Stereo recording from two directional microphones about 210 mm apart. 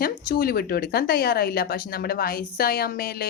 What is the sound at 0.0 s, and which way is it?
Speech, 45° left (ahead or behind).